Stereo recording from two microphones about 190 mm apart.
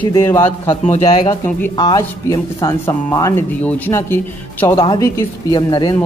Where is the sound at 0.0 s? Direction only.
15° left (ahead or behind).